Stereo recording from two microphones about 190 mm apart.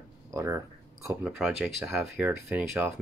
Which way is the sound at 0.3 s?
15° right (ahead or behind).